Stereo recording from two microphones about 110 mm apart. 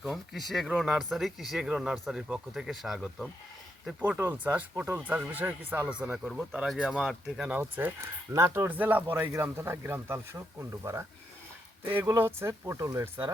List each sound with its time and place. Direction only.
0.0 s speech: centre (ahead or behind); by 7.9 s 15° right (ahead or behind)
8.0 s speech: 30° right (ahead or behind)
12.0 s speech: 25° right (ahead or behind)